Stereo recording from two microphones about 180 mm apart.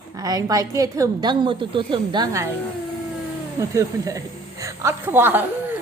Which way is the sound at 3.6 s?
15° right (ahead or behind).